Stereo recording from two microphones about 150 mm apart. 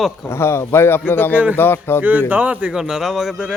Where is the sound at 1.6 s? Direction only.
15° left (ahead or behind).